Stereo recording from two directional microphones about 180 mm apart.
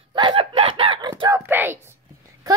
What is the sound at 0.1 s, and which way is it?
Chicken, 30° right (ahead or behind).